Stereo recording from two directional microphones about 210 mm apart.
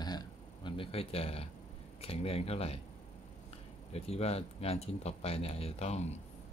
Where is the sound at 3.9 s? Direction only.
30° left (ahead or behind).